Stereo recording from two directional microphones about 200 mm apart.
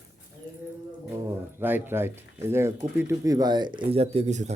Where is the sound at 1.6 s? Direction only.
10° right (ahead or behind).